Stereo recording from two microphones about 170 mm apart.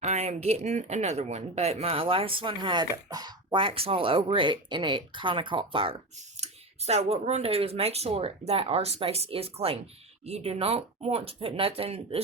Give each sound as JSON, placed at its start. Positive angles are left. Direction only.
{"t": 0.0, "sound": "speech", "side_deg": -40}